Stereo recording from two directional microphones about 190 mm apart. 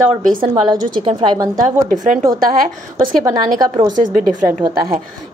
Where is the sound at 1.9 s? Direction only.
45° right (ahead or behind).